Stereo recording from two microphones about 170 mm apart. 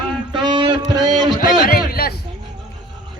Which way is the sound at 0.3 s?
25° right (ahead or behind).